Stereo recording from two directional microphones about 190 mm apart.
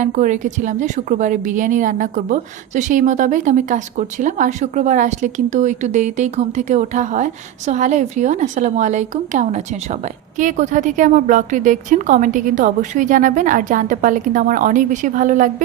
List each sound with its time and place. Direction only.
0.0 s a woman's voice: 40° right (ahead or behind)